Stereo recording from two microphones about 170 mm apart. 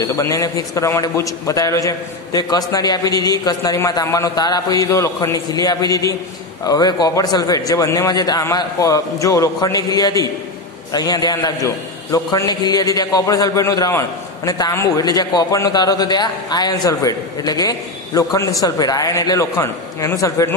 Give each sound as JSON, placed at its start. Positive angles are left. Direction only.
{"t": 0.0, "sound": "a man's voice", "side_deg": 20}